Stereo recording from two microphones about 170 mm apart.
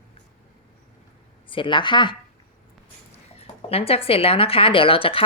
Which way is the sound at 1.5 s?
30° left (ahead or behind).